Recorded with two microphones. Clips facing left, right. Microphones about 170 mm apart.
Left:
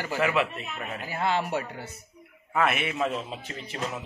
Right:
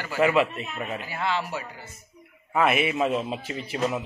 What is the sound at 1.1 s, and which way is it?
Speech, 50° left (ahead or behind).